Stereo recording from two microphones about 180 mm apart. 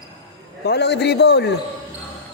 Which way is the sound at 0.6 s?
70° left (ahead or behind).